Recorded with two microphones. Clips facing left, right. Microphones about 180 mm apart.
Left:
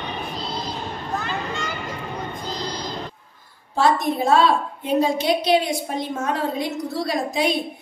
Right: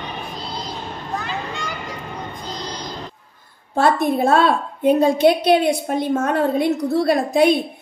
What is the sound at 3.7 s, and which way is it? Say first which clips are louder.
A woman's voice: right 3 dB; 55° right (ahead or behind).